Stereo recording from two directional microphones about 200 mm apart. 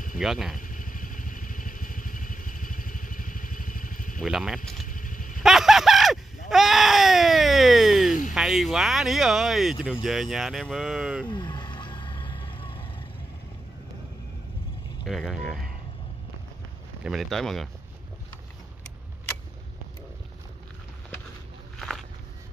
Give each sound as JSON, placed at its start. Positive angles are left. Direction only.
{"t": 0.2, "sound": "speech", "side_deg": 0}
{"t": 0.6, "sound": "vehicle", "side_deg": 40}
{"t": 4.2, "sound": "speech", "side_deg": 0}
{"t": 4.8, "sound": "a sound", "side_deg": 40}
{"t": 5.4, "sound": "a sound", "side_deg": 0}
{"t": 8.1, "sound": "a sound", "side_deg": 40}
{"t": 8.4, "sound": "speech", "side_deg": 0}
{"t": 11.2, "sound": "vehicle", "side_deg": 25}
{"t": 15.0, "sound": "speech", "side_deg": 0}
{"t": 17.0, "sound": "speech", "side_deg": 0}
{"t": 21.7, "sound": "walk", "side_deg": 0}